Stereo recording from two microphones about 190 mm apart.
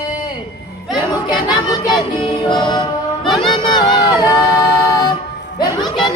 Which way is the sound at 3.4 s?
20° left (ahead or behind).